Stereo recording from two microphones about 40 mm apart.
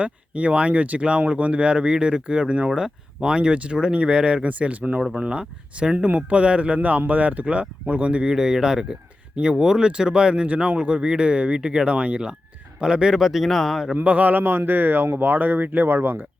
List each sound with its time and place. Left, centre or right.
0.0 s speech: right
4.4 s speech: right
5.1 s speech: right
8.3 s speech: centre
10.4 s speech: right; by 13.1 s centre
13.1 s speech: centre
13.9 s speech: right
14.4 s speech: right
15.0 s speech: right
15.3 s speech: right